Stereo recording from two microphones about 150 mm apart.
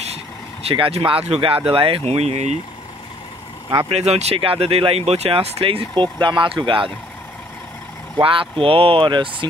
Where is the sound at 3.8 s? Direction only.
45° right (ahead or behind).